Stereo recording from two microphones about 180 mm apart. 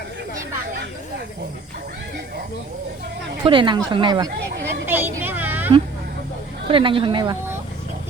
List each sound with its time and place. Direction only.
3.4 s speech: 30° right (ahead or behind)
4.4 s speech: 65° right (ahead or behind)
4.9 s a sound: 10° right (ahead or behind)
6.7 s speech: 30° right (ahead or behind)